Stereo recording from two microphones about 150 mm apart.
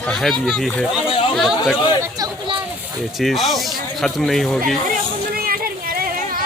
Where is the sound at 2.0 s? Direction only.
25° right (ahead or behind).